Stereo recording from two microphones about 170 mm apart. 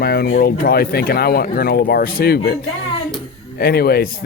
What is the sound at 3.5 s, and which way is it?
Speech, 65° left (ahead or behind).